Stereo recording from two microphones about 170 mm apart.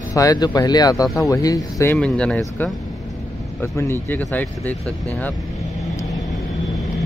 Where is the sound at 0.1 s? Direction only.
20° left (ahead or behind).